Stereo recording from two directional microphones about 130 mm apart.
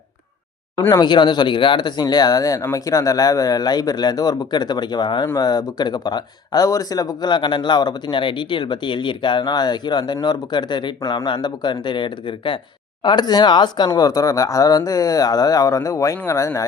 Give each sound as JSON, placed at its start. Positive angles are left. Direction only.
{"t": 0.9, "sound": "speech", "side_deg": 30}